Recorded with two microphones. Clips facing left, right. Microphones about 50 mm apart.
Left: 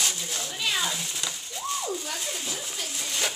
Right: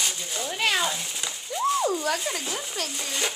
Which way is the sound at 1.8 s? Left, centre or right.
Right.